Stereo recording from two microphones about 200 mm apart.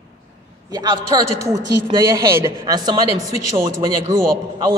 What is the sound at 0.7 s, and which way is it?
Speech, 20° right (ahead or behind).